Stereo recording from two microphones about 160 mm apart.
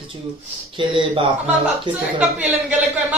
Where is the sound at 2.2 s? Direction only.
5° right (ahead or behind).